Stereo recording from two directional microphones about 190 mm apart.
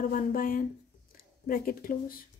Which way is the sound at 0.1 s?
45° left (ahead or behind).